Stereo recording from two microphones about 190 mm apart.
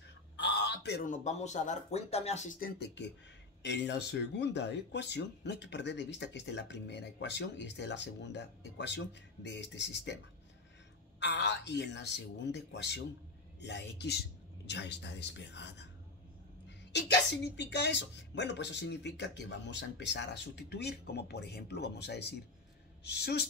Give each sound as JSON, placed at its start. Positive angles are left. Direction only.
{"t": 0.4, "sound": "a sound", "side_deg": 65}
{"t": 1.0, "sound": "speech", "side_deg": 40}
{"t": 2.8, "sound": "speech", "side_deg": 65}